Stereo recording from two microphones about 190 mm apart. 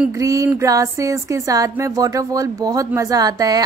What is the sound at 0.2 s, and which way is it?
Speech, 15° right (ahead or behind).